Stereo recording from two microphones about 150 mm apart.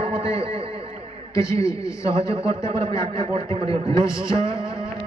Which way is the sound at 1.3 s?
20° left (ahead or behind).